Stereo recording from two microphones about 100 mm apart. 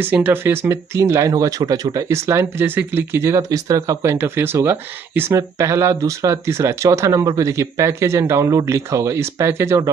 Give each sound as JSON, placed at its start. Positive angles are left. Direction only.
{"t": 0.0, "sound": "speech", "side_deg": -20}